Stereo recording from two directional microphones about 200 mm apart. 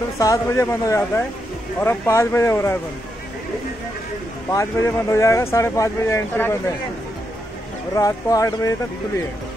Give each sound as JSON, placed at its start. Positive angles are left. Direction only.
{"t": 0.2, "sound": "speech", "side_deg": 15}
{"t": 4.5, "sound": "speech", "side_deg": 15}
{"t": 7.9, "sound": "speech", "side_deg": 15}